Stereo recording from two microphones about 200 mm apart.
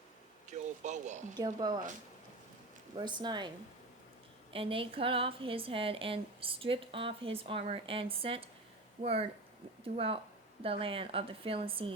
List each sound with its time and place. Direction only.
0.5 s a sound: 35° right (ahead or behind)
1.4 s a woman's voice: 20° right (ahead or behind)
2.9 s a woman's voice: 20° right (ahead or behind)
4.5 s a woman's voice: 25° right (ahead or behind)